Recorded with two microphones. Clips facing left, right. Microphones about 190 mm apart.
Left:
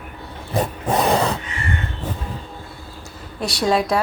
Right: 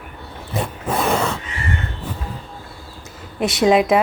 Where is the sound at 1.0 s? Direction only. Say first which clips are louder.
Left 1 dB; 35° left (ahead or behind).